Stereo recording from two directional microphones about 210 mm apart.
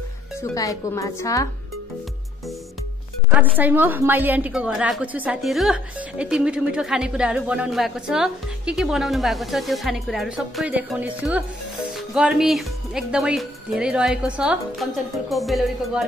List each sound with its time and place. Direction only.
0.4 s speech: 15° left (ahead or behind)
3.3 s a woman's voice: 10° right (ahead or behind)